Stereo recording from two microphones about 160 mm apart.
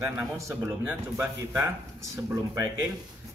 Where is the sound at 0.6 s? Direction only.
5° right (ahead or behind).